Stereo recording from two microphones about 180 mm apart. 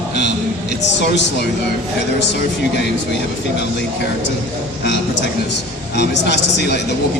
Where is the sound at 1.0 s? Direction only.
75° left (ahead or behind).